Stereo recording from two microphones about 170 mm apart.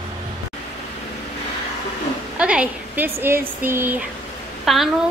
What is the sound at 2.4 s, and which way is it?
A woman's voice, 5° right (ahead or behind).